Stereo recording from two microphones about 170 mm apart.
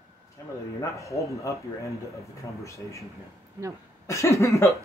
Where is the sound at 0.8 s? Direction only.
20° left (ahead or behind).